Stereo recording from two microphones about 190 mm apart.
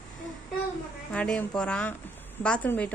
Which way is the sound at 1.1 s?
5° left (ahead or behind).